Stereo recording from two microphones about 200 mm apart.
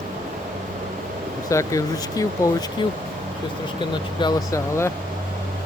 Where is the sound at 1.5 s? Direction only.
15° left (ahead or behind).